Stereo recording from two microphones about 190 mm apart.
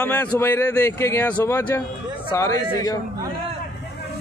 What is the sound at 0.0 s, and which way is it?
A man's voice, 10° left (ahead or behind).